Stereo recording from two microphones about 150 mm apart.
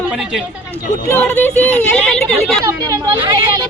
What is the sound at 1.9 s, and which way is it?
Speech, 5° left (ahead or behind).